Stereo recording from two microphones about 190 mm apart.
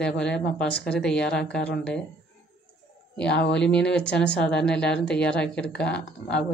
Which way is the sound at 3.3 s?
65° left (ahead or behind).